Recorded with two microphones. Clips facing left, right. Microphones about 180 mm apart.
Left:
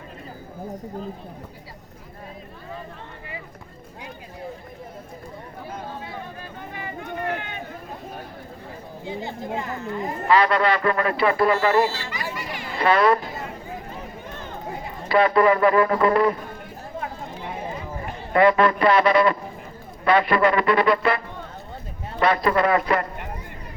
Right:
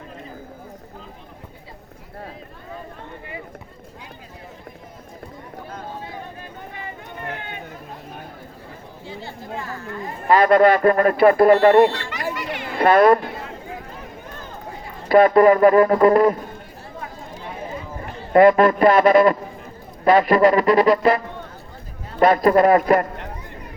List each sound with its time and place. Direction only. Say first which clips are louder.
9.0 s speech: left 4 dB; 20° left (ahead or behind)
10.2 s speech: right 6 dB; 50° right (ahead or behind)
15.1 s speech: right 5 dB; 45° right (ahead or behind)
18.3 s speech: right 5 dB; 45° right (ahead or behind)
22.2 s speech: right 6 dB; 45° right (ahead or behind)